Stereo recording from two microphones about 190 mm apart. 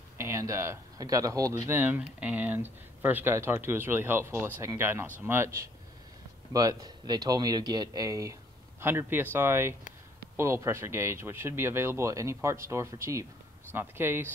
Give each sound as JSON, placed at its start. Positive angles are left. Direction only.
{"t": 0.2, "sound": "speech", "side_deg": -15}